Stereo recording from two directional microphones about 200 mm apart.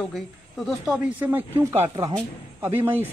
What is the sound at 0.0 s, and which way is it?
Speech, centre (ahead or behind).